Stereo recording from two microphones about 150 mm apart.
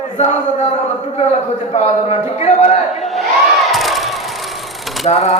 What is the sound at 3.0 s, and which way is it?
Crowd, centre (ahead or behind).